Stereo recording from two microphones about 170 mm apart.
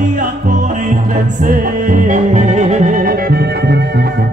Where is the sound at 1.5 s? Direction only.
50° right (ahead or behind).